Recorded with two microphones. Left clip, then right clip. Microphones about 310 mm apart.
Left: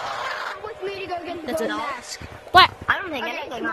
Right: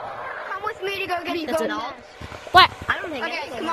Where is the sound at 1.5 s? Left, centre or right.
Centre.